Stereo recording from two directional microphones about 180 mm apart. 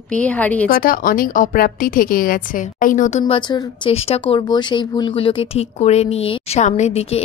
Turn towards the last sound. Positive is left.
turn(degrees=40)  # may be behind; listen again after turning